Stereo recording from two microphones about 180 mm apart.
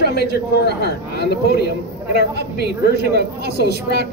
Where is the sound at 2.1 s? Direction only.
65° right (ahead or behind).